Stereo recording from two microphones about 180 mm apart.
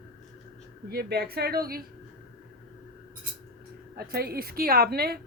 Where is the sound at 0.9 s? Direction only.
60° right (ahead or behind).